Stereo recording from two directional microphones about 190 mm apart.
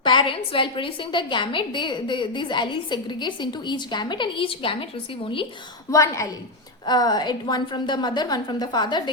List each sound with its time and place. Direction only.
0.0 s a woman's voice: 25° left (ahead or behind)
5.9 s a woman's voice: 15° left (ahead or behind)